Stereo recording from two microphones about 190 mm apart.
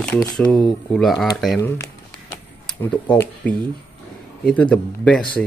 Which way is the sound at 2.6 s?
5° left (ahead or behind).